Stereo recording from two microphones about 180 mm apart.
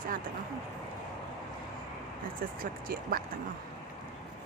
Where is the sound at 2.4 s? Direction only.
50° right (ahead or behind).